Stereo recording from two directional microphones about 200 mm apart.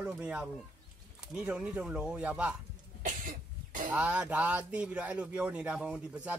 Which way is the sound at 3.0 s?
40° right (ahead or behind).